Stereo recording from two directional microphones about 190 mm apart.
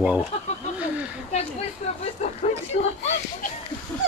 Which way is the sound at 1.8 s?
35° left (ahead or behind).